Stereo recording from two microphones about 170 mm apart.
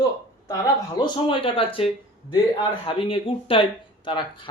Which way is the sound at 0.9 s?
25° left (ahead or behind).